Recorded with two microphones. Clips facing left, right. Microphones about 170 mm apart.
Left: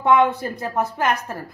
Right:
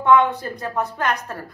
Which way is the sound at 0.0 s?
20° left (ahead or behind).